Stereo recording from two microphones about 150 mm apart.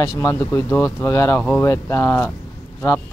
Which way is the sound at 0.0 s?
15° left (ahead or behind).